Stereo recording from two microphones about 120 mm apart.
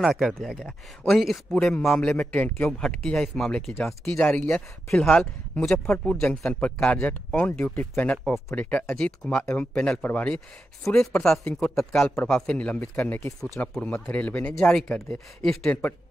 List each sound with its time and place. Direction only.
0.0 s speech: centre (ahead or behind)